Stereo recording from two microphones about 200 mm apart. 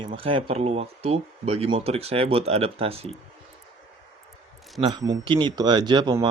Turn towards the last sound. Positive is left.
turn(degrees=-25)  # may be behind; listen again after turning